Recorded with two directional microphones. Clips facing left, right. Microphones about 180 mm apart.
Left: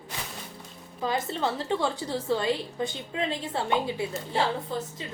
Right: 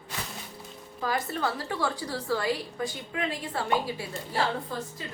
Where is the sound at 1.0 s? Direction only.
25° left (ahead or behind).